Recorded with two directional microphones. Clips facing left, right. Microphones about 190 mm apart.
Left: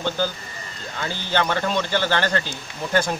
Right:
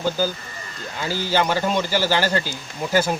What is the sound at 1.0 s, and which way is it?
Speech, 10° right (ahead or behind).